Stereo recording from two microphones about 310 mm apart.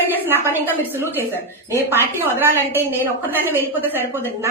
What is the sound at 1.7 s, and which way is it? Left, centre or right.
A woman's voice, centre.